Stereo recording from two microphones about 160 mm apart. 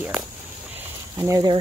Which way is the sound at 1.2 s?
20° right (ahead or behind).